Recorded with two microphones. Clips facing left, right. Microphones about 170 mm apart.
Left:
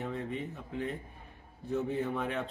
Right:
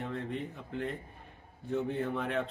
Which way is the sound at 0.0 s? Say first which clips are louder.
Even; centre (ahead or behind).